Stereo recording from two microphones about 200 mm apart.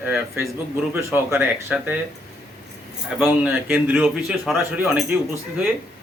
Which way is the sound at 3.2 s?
5° right (ahead or behind).